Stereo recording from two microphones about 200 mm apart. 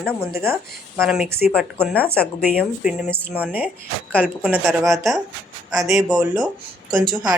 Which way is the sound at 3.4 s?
10° right (ahead or behind).